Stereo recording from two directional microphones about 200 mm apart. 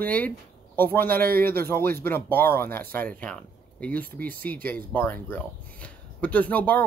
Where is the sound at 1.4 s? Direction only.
10° left (ahead or behind).